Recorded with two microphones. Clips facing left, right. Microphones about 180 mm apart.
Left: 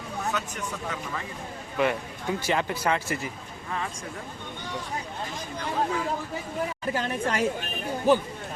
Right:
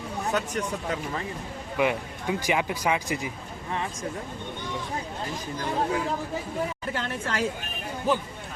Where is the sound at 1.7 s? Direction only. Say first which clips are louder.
Even; 10° right (ahead or behind).